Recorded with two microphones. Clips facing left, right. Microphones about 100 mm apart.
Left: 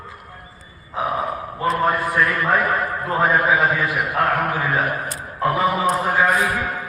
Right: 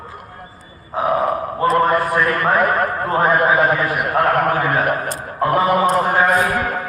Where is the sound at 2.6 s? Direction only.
55° right (ahead or behind).